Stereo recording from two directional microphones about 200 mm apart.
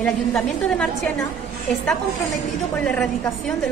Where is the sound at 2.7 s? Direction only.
5° left (ahead or behind).